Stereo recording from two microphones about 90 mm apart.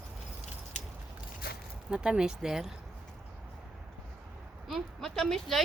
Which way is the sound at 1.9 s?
10° right (ahead or behind).